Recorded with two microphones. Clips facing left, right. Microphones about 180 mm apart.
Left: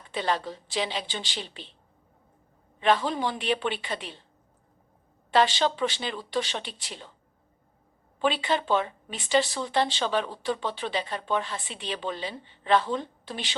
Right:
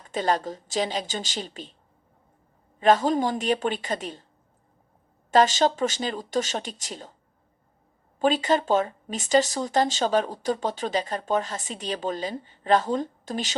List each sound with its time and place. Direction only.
0.0 s speech: 45° right (ahead or behind)
2.8 s speech: 40° right (ahead or behind)
5.3 s speech: 45° right (ahead or behind)
8.2 s speech: 40° right (ahead or behind)